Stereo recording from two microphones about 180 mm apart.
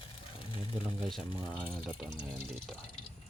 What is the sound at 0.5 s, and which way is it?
Speech, 30° left (ahead or behind).